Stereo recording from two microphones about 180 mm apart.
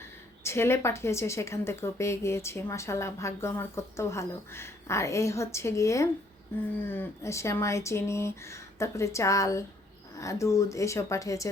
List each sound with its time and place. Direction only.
0.4 s a woman's voice: 15° left (ahead or behind)